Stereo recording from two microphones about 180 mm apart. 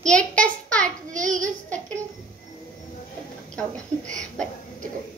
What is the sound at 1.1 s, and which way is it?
Child singing, 45° right (ahead or behind).